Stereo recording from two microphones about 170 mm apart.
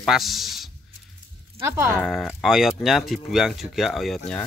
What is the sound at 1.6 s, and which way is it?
Speech, 15° right (ahead or behind).